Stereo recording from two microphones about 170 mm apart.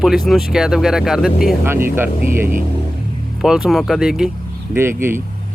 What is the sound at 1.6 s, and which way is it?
Speech, 15° right (ahead or behind).